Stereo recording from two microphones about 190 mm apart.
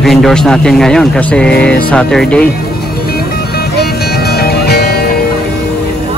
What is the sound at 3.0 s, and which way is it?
Music, 55° left (ahead or behind).